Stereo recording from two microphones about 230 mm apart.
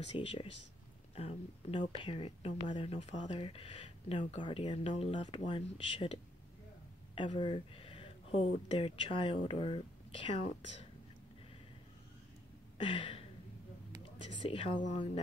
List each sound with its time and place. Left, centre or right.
0.1 s speech: left
7.2 s speech: left
12.7 s a sound: left
14.5 s speech: left